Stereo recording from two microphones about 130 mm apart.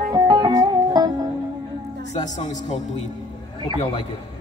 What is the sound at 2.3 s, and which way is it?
Speech, 65° left (ahead or behind).